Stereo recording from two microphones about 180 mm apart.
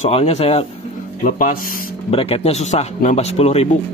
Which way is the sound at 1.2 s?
45° left (ahead or behind).